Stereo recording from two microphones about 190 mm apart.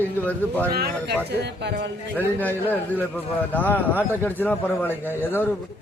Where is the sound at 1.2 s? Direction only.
60° right (ahead or behind).